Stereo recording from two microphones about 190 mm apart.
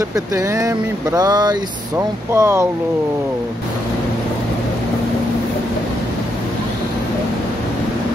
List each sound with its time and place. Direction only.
0.1 s speech: 15° right (ahead or behind)